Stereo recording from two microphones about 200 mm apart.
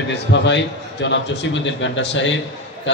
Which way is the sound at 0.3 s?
65° left (ahead or behind).